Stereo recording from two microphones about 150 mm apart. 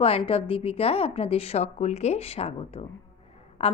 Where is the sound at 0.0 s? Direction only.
40° left (ahead or behind).